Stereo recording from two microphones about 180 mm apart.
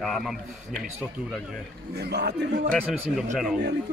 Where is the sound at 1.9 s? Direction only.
65° right (ahead or behind).